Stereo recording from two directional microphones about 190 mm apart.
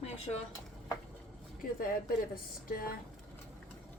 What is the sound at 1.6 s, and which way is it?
Speech, 50° left (ahead or behind).